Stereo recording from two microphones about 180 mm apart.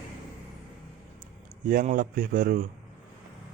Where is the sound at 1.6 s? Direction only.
50° right (ahead or behind).